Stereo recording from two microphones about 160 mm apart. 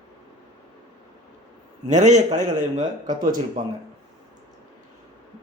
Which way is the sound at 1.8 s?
50° right (ahead or behind).